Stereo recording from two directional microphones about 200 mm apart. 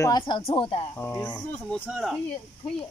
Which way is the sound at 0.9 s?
10° left (ahead or behind).